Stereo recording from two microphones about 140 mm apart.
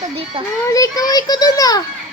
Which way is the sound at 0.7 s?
25° left (ahead or behind).